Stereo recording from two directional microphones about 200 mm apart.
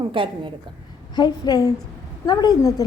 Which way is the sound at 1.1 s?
20° left (ahead or behind).